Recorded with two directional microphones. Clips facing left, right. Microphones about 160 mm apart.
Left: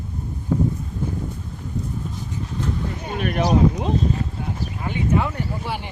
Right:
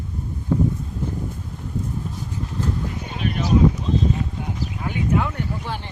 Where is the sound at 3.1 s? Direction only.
60° left (ahead or behind).